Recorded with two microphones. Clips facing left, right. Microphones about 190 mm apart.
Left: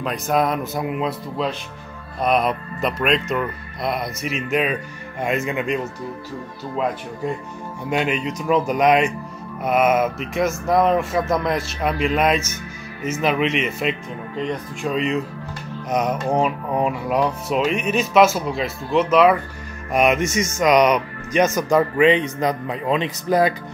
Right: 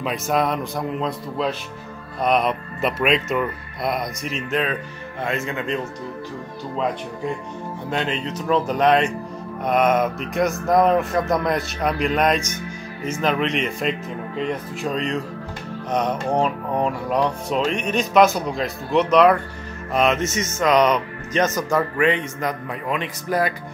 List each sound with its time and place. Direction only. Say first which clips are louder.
0.0 s speech: left 1 dB; centre (ahead or behind); by 5.8 s 15° left (ahead or behind)
7.9 s speech: left 3 dB; 15° left (ahead or behind)
19.9 s speech: left 2 dB; 15° left (ahead or behind)